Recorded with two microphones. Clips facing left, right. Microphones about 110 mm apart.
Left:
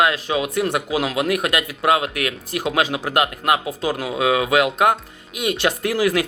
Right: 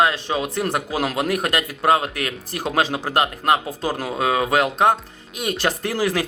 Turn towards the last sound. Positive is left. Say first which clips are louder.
# left 3 dB
turn(degrees=-35)  # may be behind; listen again after turning